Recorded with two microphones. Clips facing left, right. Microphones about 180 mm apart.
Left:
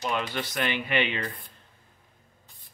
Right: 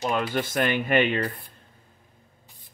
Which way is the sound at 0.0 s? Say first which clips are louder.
Right 4 dB; 45° right (ahead or behind).